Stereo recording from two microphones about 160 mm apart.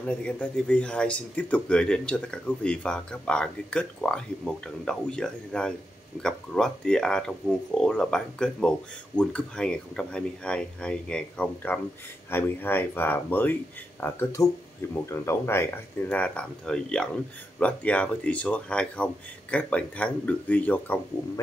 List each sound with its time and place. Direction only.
0.0 s speech: 5° left (ahead or behind)